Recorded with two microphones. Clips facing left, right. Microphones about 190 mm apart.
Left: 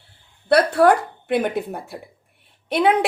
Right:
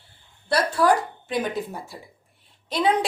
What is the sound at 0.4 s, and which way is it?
A woman's voice, 60° left (ahead or behind).